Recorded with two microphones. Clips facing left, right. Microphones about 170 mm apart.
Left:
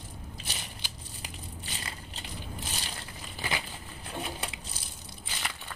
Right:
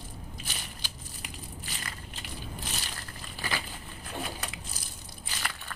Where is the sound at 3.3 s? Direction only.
20° left (ahead or behind).